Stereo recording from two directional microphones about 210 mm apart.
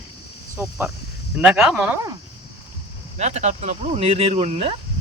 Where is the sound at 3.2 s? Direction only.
30° right (ahead or behind).